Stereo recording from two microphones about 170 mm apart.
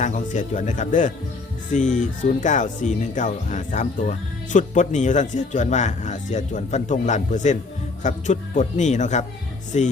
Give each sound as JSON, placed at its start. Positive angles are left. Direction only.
{"t": 0.0, "sound": "speech", "side_deg": 45}